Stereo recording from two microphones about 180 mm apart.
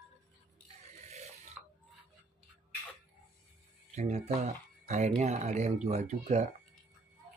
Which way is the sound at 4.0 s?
35° right (ahead or behind).